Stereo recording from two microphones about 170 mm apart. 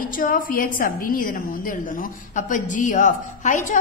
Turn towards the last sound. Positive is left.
turn(degrees=45)  # may be behind; listen again after turning